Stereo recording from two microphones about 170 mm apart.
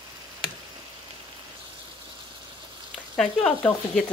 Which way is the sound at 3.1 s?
5° left (ahead or behind).